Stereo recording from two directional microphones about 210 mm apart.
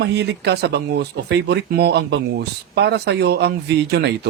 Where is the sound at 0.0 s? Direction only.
55° right (ahead or behind).